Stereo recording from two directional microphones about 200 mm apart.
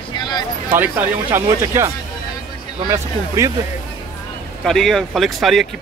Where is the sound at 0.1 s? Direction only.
20° left (ahead or behind).